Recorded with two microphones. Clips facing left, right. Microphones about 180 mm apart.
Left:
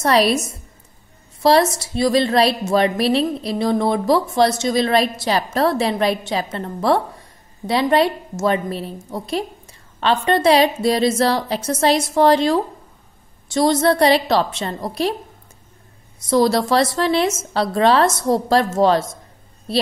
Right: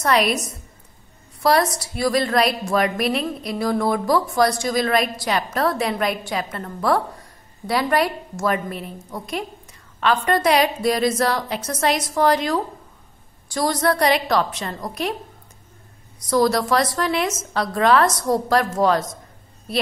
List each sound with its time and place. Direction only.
0.0 s a woman's voice: 30° left (ahead or behind)
16.2 s a woman's voice: 25° left (ahead or behind)